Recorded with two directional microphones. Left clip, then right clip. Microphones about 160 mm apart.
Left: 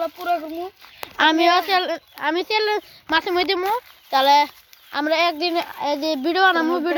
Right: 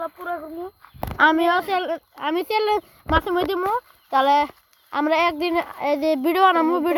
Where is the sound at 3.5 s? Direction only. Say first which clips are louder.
Left 1 dB; 45° right (ahead or behind).